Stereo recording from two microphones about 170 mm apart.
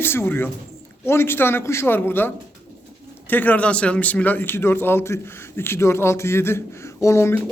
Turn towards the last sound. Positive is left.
turn(degrees=15)  # may be behind; listen again after turning